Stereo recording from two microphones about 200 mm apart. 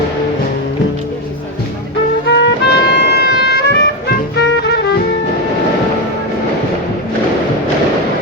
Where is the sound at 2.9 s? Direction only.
55° left (ahead or behind).